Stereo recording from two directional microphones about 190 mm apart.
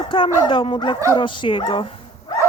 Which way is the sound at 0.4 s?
25° left (ahead or behind).